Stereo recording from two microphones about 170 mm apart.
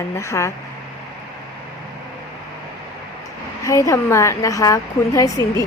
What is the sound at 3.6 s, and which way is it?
A woman's voice, 20° left (ahead or behind).